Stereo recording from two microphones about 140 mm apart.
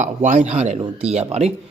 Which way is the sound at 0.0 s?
55° right (ahead or behind).